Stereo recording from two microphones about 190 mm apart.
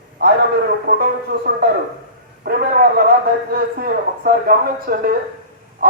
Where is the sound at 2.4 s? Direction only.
55° right (ahead or behind).